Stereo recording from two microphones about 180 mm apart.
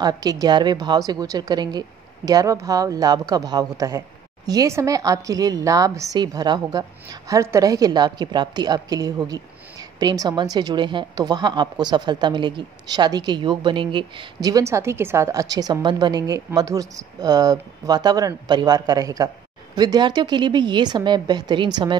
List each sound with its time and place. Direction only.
0.0 s a woman's voice: 20° right (ahead or behind)